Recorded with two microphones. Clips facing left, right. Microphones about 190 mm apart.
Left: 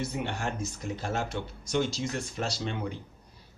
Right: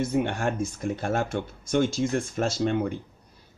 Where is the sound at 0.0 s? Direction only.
50° right (ahead or behind).